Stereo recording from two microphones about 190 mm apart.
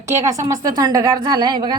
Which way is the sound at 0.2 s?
15° right (ahead or behind).